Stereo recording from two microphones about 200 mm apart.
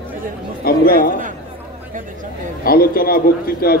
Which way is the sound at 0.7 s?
50° left (ahead or behind).